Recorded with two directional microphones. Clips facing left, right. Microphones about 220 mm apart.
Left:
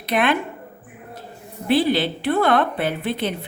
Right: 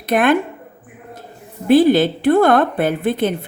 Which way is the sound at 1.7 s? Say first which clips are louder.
Right 7 dB; 45° right (ahead or behind).